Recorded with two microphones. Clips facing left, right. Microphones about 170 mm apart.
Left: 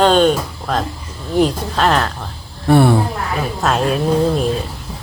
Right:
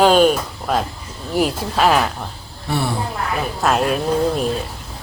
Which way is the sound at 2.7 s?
55° left (ahead or behind).